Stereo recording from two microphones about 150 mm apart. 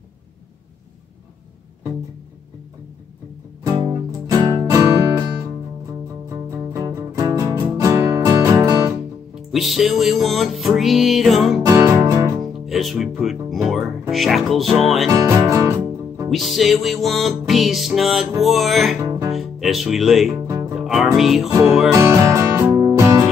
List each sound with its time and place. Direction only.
3.7 s music: 30° right (ahead or behind)
6.5 s music: 20° right (ahead or behind)
9.3 s music: centre (ahead or behind)
11.6 s music: 20° right (ahead or behind)
12.6 s speech: centre (ahead or behind)
13.2 s music: centre (ahead or behind)
15.0 s music: 20° right (ahead or behind)
16.3 s music: centre (ahead or behind)
18.9 s music: 20° right (ahead or behind)
19.3 s speech: centre (ahead or behind)
20.8 s music: 5° right (ahead or behind)
21.9 s music: 20° right (ahead or behind)